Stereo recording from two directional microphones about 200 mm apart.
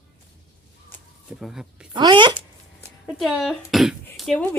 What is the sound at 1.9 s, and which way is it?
Speech, 25° right (ahead or behind).